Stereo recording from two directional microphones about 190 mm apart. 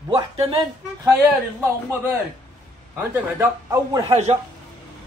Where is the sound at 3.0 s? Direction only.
15° right (ahead or behind).